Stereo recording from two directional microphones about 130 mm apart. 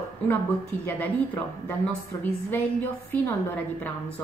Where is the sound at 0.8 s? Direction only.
15° left (ahead or behind).